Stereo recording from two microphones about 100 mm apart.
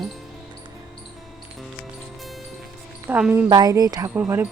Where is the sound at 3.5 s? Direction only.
40° right (ahead or behind).